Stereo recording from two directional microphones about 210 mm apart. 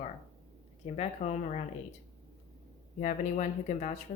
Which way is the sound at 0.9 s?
30° left (ahead or behind).